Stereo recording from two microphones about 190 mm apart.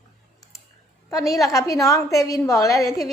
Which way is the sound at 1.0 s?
15° left (ahead or behind).